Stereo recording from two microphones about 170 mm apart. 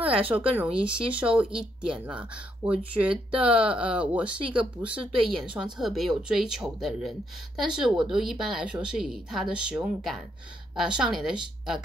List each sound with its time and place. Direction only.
0.1 s speech: 30° right (ahead or behind)
0.6 s speech: 5° right (ahead or behind)